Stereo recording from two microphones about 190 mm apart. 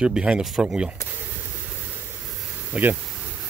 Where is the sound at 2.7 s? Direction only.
5° right (ahead or behind).